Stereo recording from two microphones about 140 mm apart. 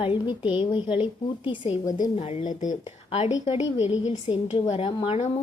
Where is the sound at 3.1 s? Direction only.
55° left (ahead or behind).